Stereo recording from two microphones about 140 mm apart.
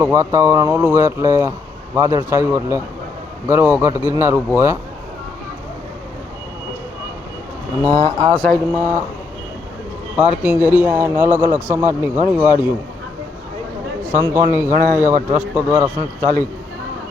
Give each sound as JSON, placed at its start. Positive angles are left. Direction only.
{"t": 0.0, "sound": "a man's voice", "side_deg": -20}
{"t": 7.9, "sound": "speech", "side_deg": -30}
{"t": 8.4, "sound": "speech", "side_deg": 5}
{"t": 8.7, "sound": "speech", "side_deg": -20}
{"t": 10.2, "sound": "a man's voice", "side_deg": -10}
{"t": 14.1, "sound": "a man's voice", "side_deg": -20}